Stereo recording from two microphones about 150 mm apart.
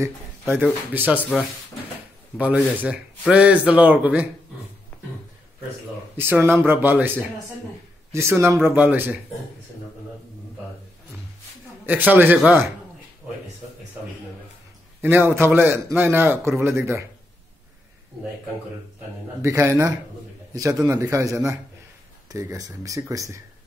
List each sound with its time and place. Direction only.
0.0 s a man's voice: 15° right (ahead or behind)
6.1 s a man's voice: 15° right (ahead or behind)
11.8 s a man's voice: 10° right (ahead or behind)
15.0 s a man's voice: 15° right (ahead or behind)
19.4 s speech: 20° right (ahead or behind)